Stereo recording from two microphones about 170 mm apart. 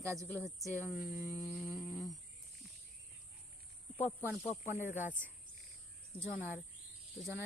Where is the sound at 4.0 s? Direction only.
10° left (ahead or behind).